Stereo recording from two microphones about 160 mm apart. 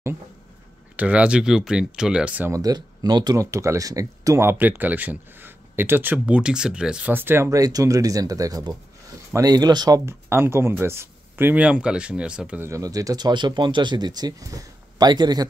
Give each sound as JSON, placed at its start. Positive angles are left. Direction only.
{"t": 0.9, "sound": "speech", "side_deg": -10}